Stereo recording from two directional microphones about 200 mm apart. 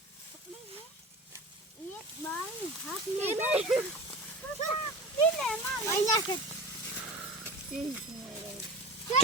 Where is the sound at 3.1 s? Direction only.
35° right (ahead or behind).